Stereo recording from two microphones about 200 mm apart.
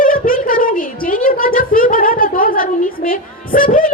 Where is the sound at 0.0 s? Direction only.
45° left (ahead or behind).